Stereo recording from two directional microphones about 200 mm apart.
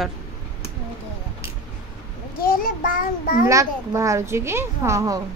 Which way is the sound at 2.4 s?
45° left (ahead or behind).